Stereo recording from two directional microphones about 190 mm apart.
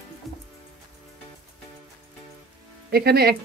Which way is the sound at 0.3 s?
Centre (ahead or behind).